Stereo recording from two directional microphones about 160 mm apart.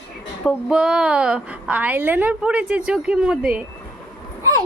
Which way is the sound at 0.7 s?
5° right (ahead or behind).